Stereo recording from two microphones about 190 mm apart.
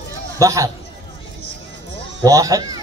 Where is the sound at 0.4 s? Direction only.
15° right (ahead or behind).